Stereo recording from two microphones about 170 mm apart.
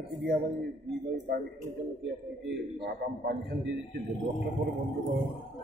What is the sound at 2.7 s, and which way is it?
Speech, 65° right (ahead or behind).